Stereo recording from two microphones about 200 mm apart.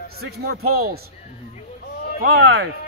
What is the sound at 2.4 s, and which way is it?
Speech, 85° right.